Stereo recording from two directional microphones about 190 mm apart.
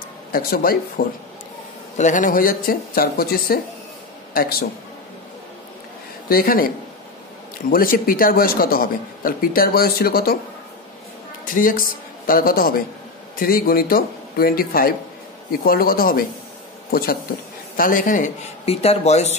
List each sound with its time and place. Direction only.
0.3 s speech: 50° left (ahead or behind)
2.0 s speech: 40° left (ahead or behind)
6.2 s speech: 50° left (ahead or behind)
7.7 s speech: 50° left (ahead or behind)
11.5 s speech: 45° left (ahead or behind)